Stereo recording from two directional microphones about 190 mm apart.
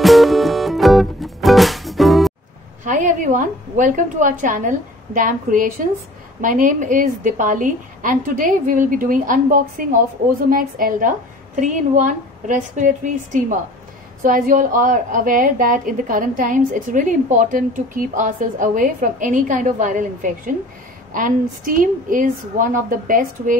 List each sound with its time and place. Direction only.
0.0 s music: centre (ahead or behind)
2.8 s a woman's voice: 40° right (ahead or behind)